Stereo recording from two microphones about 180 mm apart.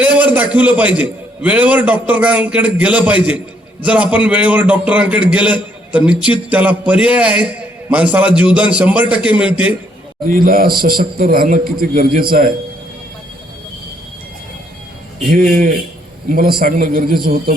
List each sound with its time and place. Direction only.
0.0 s a man's voice: 10° right (ahead or behind)
10.2 s a man's voice: 50° right (ahead or behind)
15.3 s a man's voice: 55° right (ahead or behind)